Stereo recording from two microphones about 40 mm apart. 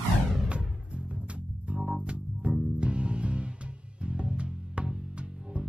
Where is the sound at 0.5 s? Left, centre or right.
Right.